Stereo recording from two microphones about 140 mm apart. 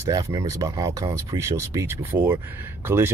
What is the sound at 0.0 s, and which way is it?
Speech, 25° right (ahead or behind).